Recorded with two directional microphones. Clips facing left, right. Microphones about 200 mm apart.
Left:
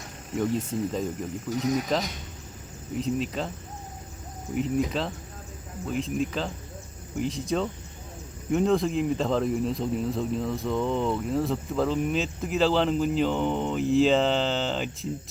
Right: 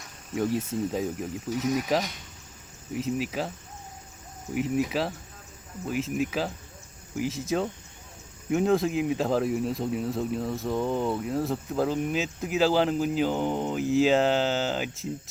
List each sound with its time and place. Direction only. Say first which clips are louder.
0.3 s speech: even; 5° right (ahead or behind)
4.5 s speech: even; 5° right (ahead or behind)